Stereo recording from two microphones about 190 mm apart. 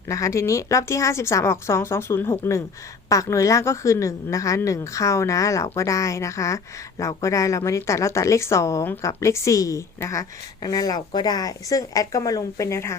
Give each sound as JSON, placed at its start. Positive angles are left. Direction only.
{"t": 0.1, "sound": "a woman's voice", "side_deg": 15}